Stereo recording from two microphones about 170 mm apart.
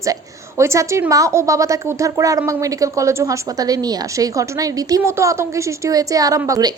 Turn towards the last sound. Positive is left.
turn(degrees=-20)  # may be behind; listen again after turning